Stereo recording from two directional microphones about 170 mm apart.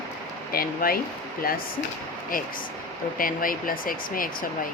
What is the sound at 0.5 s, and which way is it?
Speech, 60° left (ahead or behind).